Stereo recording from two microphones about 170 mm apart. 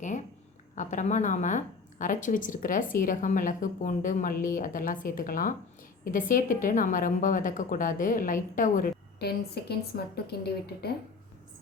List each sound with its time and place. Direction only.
0.8 s a woman's voice: 45° left (ahead or behind)
9.1 s a woman's voice: 70° left (ahead or behind)